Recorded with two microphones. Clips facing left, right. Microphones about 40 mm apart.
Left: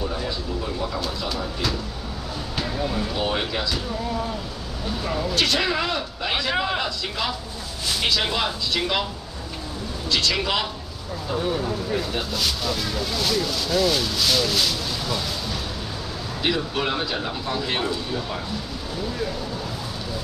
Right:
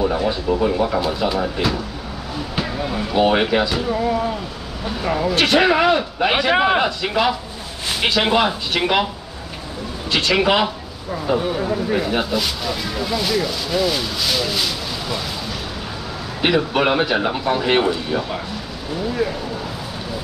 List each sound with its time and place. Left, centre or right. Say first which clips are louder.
0.0 s speech: right 9 dB; right
1.0 s speech: right 8 dB; right
2.5 s speech: right 2 dB; right
10.0 s speech: right 6 dB; right
12.4 s speech: right 3 dB; centre
16.3 s speech: right 7 dB; right
19.2 s speech: right 7 dB; centre